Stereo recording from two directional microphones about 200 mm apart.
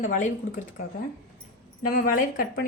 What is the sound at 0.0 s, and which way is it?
Speech, 40° left (ahead or behind).